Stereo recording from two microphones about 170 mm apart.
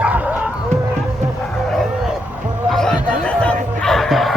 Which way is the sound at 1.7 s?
Centre (ahead or behind).